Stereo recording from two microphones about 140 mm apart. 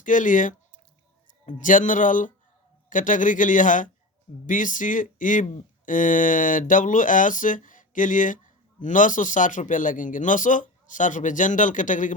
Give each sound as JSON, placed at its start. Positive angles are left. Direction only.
{"t": 0.0, "sound": "speech", "side_deg": 65}